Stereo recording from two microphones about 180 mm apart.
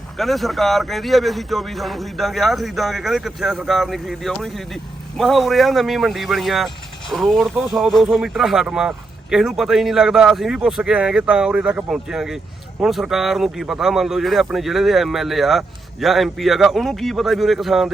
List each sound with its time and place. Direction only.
0.2 s speech: centre (ahead or behind)